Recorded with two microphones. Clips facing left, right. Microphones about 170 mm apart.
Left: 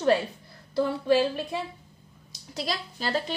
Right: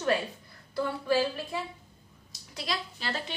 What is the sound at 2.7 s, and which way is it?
Speech, 40° left (ahead or behind).